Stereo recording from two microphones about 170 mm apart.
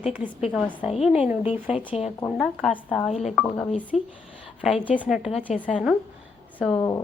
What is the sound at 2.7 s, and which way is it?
A woman's voice, 10° left (ahead or behind).